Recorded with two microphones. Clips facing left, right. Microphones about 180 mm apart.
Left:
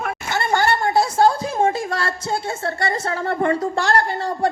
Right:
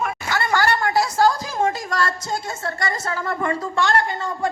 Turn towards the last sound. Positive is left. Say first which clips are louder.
# left 2 dB
turn(degrees=35)  # may be behind; listen again after turning